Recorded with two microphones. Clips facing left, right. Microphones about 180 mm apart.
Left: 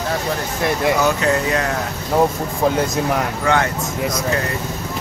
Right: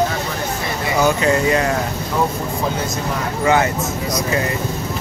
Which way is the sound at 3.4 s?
5° right (ahead or behind).